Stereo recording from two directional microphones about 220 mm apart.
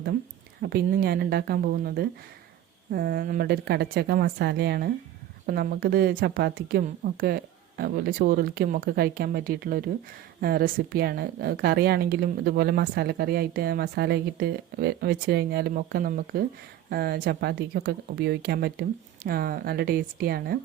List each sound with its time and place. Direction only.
0.6 s speech: 45° right (ahead or behind)